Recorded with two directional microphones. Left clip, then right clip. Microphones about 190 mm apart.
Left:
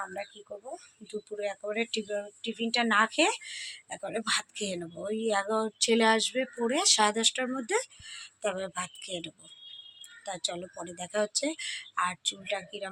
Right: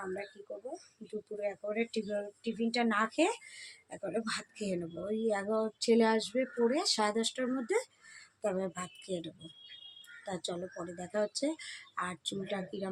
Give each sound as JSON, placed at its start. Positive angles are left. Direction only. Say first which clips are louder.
{"t": 0.0, "sound": "speech", "louder": "left 3 dB", "side_deg": 15}
{"t": 1.4, "sound": "speech", "louder": "left 3 dB", "side_deg": 15}